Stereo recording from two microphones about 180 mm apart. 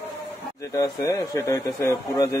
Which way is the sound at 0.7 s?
20° left (ahead or behind).